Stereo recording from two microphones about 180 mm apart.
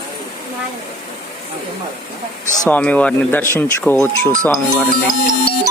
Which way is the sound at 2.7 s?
5° left (ahead or behind).